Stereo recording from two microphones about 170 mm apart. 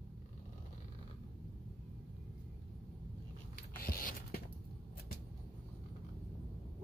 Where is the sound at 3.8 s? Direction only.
60° left (ahead or behind).